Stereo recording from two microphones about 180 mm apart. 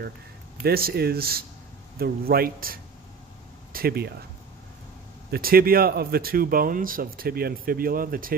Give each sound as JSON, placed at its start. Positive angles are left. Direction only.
{"t": 0.7, "sound": "speech", "side_deg": -60}
{"t": 5.3, "sound": "speech", "side_deg": -55}